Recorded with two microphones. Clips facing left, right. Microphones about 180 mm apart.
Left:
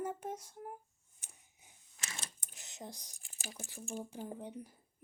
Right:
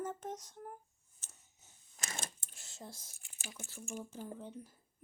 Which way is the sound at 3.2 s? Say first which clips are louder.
Left 2 dB; 35° left (ahead or behind).